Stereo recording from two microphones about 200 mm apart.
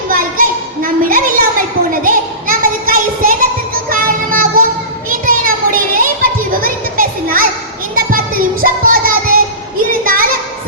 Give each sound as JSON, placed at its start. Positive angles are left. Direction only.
{"t": 0.1, "sound": "a sound", "side_deg": -45}
{"t": 3.8, "sound": "music", "side_deg": -45}
{"t": 5.0, "sound": "child singing", "side_deg": -45}
{"t": 6.5, "sound": "children playing", "side_deg": -45}
{"t": 7.9, "sound": "child singing", "side_deg": -45}
{"t": 10.0, "sound": "a sound", "side_deg": -45}